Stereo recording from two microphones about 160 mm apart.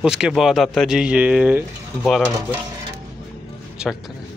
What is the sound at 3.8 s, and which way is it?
Speech, 5° right (ahead or behind).